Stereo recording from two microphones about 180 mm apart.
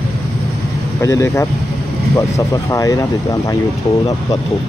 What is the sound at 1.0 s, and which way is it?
Speech, 15° left (ahead or behind).